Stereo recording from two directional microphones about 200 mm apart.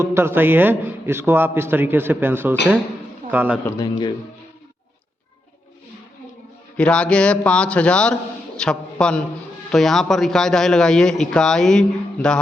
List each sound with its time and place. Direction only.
0.0 s a man's voice: 10° right (ahead or behind)
3.7 s a man's voice: 20° left (ahead or behind)
6.7 s a man's voice: 5° left (ahead or behind)